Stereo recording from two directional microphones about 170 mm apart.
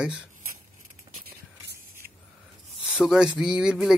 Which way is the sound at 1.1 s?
60° right (ahead or behind).